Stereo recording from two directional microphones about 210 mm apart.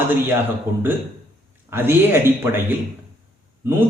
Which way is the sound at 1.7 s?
10° right (ahead or behind).